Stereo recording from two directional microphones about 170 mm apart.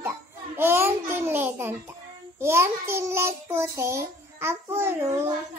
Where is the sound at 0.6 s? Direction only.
10° right (ahead or behind).